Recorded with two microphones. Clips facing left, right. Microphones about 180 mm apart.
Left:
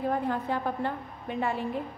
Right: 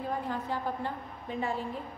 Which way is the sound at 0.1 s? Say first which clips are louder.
Left 5 dB; 60° left (ahead or behind).